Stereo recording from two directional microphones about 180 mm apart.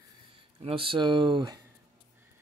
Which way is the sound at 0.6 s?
30° right (ahead or behind).